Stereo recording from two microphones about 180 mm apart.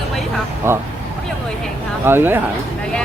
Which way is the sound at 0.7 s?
15° right (ahead or behind).